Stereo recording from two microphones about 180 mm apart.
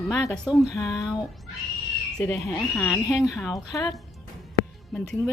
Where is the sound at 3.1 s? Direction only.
5° right (ahead or behind).